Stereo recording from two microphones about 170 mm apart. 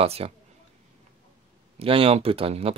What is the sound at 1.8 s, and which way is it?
Speech, 35° right (ahead or behind).